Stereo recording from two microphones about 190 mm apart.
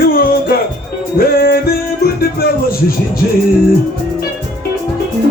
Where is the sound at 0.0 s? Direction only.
50° left (ahead or behind).